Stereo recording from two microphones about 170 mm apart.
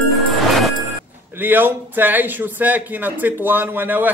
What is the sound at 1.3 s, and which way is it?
A man's voice, 10° right (ahead or behind).